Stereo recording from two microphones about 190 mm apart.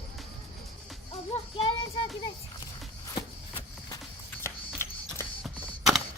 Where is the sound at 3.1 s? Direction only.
20° left (ahead or behind).